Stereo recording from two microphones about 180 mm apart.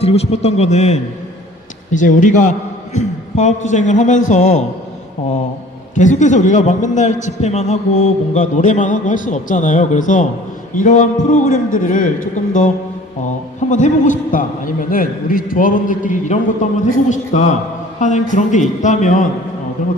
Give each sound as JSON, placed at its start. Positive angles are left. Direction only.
{"t": 0.0, "sound": "a man's voice", "side_deg": 35}
{"t": 5.9, "sound": "a man's voice", "side_deg": 45}